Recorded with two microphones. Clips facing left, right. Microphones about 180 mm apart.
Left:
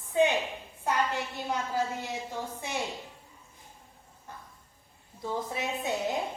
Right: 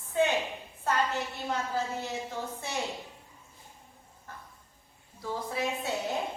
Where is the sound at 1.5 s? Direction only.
10° left (ahead or behind).